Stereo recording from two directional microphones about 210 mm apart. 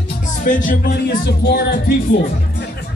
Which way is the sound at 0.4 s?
40° left (ahead or behind).